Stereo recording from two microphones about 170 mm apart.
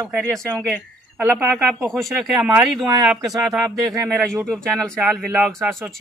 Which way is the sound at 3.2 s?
20° right (ahead or behind).